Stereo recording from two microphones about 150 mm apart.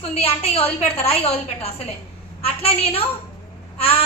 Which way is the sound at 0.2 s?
40° left (ahead or behind).